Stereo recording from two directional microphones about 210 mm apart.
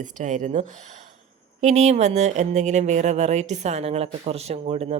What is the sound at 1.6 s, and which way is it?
Speech, 30° right (ahead or behind).